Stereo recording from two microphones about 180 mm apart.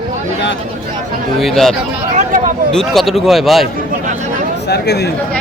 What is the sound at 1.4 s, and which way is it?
Speech, centre (ahead or behind).